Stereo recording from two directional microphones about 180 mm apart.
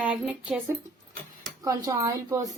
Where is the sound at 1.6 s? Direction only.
20° right (ahead or behind).